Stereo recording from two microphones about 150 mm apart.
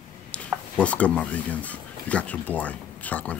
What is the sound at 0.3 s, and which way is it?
Speech, 10° left (ahead or behind).